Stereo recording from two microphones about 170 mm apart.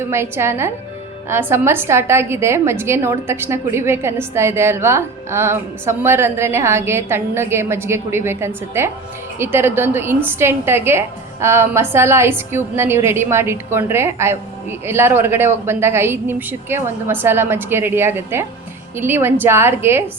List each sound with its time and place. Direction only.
0.0 s a woman's voice: 15° right (ahead or behind)